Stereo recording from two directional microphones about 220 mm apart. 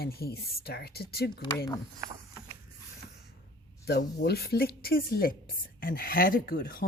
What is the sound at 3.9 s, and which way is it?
Speech, 50° left (ahead or behind).